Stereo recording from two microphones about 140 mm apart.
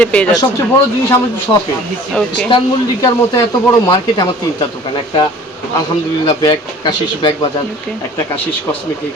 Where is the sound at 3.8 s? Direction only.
30° left (ahead or behind).